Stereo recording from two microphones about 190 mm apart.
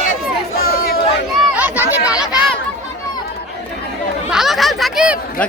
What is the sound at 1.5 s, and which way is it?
Chatter, 10° right (ahead or behind).